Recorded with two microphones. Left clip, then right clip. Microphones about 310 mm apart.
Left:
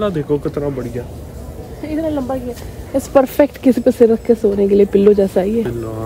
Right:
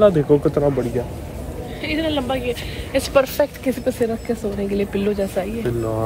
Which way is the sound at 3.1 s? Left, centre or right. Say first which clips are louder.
Left 6 dB; left.